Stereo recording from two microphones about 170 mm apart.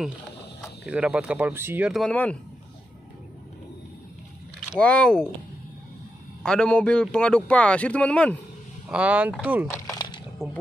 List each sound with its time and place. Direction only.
0.6 s speech: 5° right (ahead or behind)
4.7 s a man's voice: 5° left (ahead or behind)
6.4 s a man's voice: 5° left (ahead or behind)
8.8 s speech: 5° right (ahead or behind)
9.7 s a sound: 20° left (ahead or behind)